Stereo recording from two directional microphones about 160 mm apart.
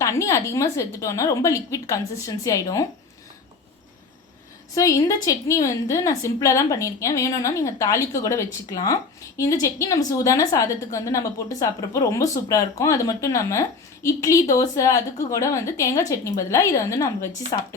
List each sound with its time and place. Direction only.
0.0 s a woman's voice: 20° left (ahead or behind)
4.7 s a woman's voice: 20° left (ahead or behind)